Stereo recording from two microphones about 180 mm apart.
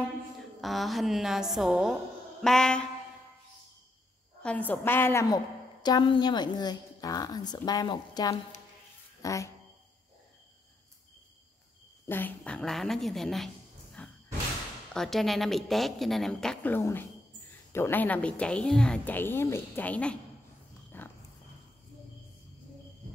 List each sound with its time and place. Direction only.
0.6 s a woman's voice: centre (ahead or behind)
4.4 s a woman's voice: 5° left (ahead or behind)
12.1 s a woman's voice: 10° left (ahead or behind)
14.0 s a sound: 10° left (ahead or behind)
15.0 s a woman's voice: centre (ahead or behind)
20.9 s a sound: 10° left (ahead or behind)